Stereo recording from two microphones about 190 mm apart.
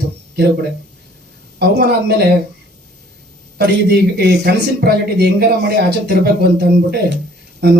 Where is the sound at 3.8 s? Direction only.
55° right (ahead or behind).